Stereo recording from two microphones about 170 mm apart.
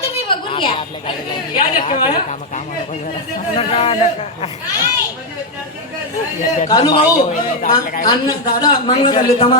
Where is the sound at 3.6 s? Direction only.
35° left (ahead or behind).